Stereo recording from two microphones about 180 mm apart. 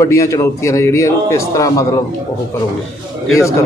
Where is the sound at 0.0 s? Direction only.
15° left (ahead or behind).